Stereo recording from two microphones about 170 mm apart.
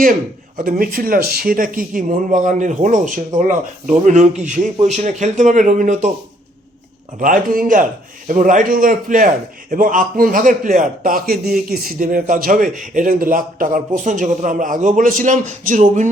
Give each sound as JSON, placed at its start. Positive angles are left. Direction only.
{"t": 0.0, "sound": "a man's voice", "side_deg": -55}
{"t": 7.2, "sound": "a man's voice", "side_deg": -50}